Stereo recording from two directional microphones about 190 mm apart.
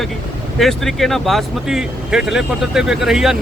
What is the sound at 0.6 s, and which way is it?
Speech, centre (ahead or behind).